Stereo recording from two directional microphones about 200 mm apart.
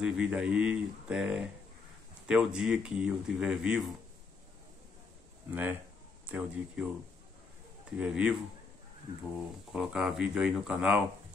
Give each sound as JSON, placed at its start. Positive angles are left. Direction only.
{"t": 0.0, "sound": "speech", "side_deg": -5}
{"t": 5.5, "sound": "speech", "side_deg": -10}
{"t": 8.0, "sound": "speech", "side_deg": -5}
{"t": 9.7, "sound": "speech", "side_deg": 0}